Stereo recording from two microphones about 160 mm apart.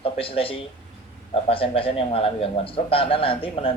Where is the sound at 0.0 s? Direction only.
35° left (ahead or behind).